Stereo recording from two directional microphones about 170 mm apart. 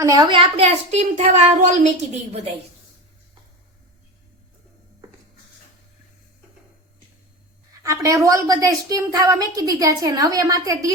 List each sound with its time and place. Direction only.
0.0 s a woman's voice: 20° right (ahead or behind); by 1.9 s 45° right (ahead or behind)
7.8 s a woman's voice: 20° right (ahead or behind)